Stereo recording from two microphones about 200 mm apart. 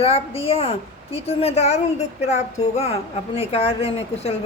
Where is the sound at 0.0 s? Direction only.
30° left (ahead or behind).